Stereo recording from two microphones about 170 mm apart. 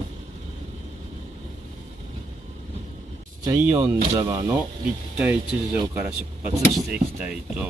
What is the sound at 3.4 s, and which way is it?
Speech, 20° right (ahead or behind).